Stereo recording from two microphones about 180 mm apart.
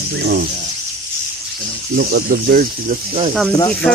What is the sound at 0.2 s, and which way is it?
Speech, 65° right (ahead or behind).